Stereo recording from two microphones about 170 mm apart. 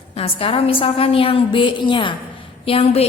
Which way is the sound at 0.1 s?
35° left (ahead or behind).